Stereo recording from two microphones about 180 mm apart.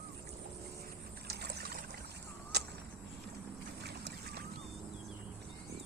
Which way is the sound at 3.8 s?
65° right (ahead or behind).